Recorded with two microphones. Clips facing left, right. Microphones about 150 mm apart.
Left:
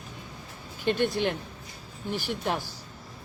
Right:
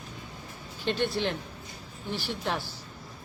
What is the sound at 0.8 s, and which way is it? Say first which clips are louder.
Speech: left 3 dB; 50° left (ahead or behind).